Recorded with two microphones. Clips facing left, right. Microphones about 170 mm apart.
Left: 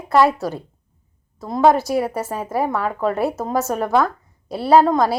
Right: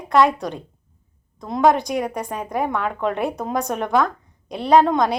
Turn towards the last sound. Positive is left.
turn(degrees=5)  # may be behind; listen again after turning